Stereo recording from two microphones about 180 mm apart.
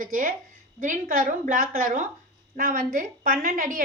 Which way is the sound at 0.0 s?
50° right (ahead or behind).